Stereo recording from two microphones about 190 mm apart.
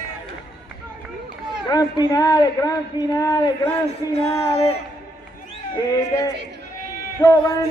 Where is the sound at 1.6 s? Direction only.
20° left (ahead or behind).